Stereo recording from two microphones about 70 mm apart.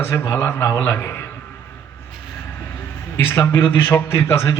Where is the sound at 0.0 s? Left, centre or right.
Left.